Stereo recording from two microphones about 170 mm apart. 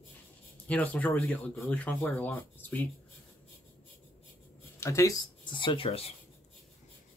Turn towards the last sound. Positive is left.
turn(degrees=35)  # may be behind; listen again after turning